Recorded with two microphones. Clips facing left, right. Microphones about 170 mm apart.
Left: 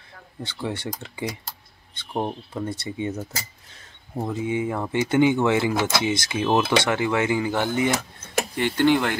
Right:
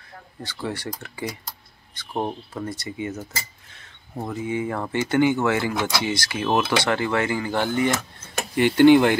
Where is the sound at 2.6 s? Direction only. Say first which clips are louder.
Left 2 dB; 25° left (ahead or behind).